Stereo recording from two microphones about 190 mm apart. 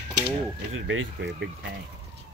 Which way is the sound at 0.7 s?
90° right.